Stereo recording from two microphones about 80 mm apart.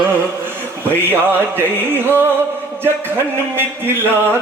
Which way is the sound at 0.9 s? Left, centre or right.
Right.